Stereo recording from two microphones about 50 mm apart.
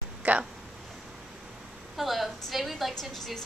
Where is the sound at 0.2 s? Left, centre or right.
Right.